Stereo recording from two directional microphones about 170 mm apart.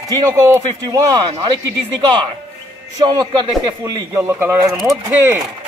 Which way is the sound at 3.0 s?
25° right (ahead or behind).